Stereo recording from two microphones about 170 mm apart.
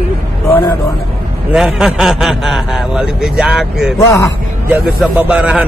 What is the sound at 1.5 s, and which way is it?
A man's voice, 5° right (ahead or behind).